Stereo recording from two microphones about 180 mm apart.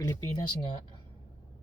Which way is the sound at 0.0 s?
20° left (ahead or behind).